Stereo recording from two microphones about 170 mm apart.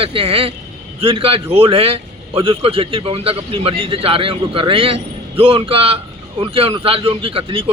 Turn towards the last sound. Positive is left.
turn(degrees=-30)  # may be behind; listen again after turning